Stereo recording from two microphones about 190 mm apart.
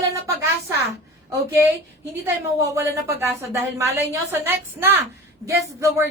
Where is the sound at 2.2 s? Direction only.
15° right (ahead or behind).